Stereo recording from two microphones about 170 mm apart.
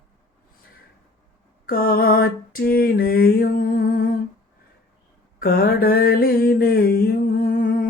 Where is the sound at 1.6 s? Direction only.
60° left (ahead or behind).